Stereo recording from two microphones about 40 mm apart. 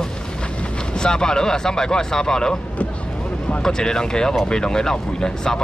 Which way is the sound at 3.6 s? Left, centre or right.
Centre.